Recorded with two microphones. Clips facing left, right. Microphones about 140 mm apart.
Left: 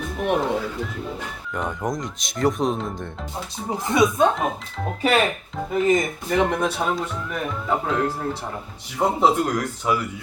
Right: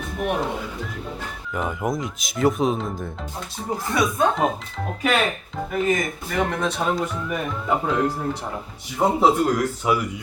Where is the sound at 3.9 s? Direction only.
20° left (ahead or behind).